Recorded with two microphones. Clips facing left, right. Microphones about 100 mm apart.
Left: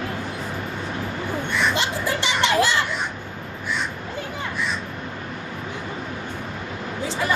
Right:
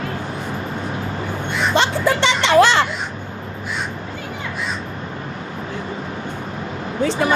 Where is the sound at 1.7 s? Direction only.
70° right (ahead or behind).